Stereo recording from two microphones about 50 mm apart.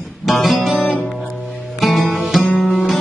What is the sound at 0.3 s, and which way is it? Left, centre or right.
Music, centre.